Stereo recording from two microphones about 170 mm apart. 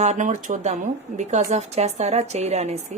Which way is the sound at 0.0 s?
45° right (ahead or behind).